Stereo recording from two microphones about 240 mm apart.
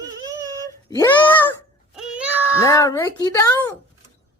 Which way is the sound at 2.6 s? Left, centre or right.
Centre.